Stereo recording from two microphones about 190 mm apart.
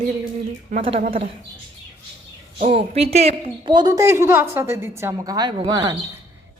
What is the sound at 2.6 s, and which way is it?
A woman's voice, 30° right (ahead or behind).